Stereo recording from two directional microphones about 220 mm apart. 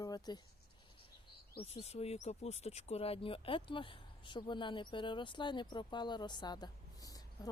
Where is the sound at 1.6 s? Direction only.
25° left (ahead or behind).